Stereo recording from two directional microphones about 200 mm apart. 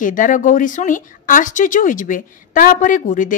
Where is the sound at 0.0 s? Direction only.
40° left (ahead or behind).